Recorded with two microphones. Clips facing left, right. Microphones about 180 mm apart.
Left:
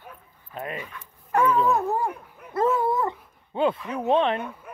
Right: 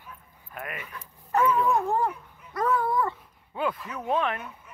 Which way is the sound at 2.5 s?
25° left (ahead or behind).